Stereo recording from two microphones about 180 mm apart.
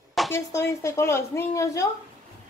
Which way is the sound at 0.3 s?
15° left (ahead or behind).